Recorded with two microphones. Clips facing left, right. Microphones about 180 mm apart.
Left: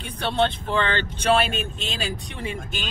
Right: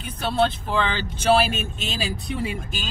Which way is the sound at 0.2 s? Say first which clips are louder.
Right 1 dB; 5° right (ahead or behind).